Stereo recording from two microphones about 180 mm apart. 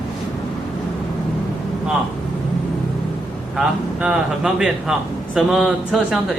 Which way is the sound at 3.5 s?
5° right (ahead or behind).